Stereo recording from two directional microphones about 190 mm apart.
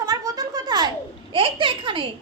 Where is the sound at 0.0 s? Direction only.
20° right (ahead or behind).